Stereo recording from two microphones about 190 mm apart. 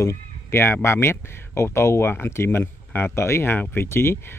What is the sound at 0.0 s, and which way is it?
Speech, 15° left (ahead or behind).